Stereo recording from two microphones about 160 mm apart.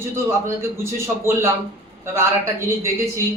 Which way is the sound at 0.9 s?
15° right (ahead or behind).